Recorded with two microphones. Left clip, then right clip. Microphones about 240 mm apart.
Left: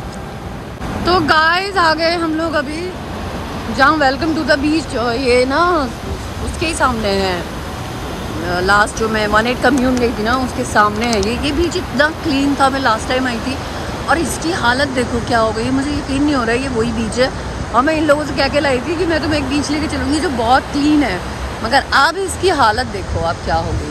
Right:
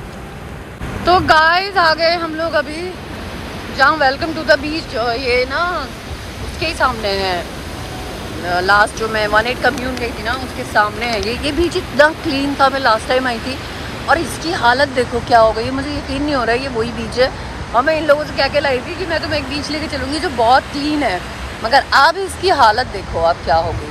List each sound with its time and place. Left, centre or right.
1.0 s speech: centre
3.7 s speech: centre
8.5 s speech: centre
11.4 s speech: centre